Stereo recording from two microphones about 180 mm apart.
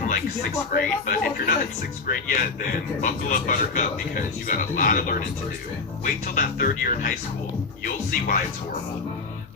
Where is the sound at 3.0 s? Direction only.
45° left (ahead or behind).